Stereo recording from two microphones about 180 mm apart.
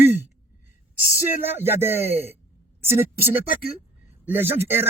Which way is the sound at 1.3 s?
10° right (ahead or behind).